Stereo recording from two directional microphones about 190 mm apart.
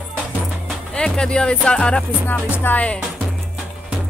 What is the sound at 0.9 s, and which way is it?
Speech, 5° left (ahead or behind).